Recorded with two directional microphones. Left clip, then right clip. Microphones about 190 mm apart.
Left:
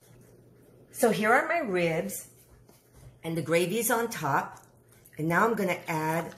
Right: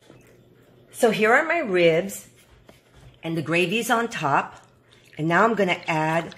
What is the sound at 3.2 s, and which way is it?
Speech, 55° right (ahead or behind).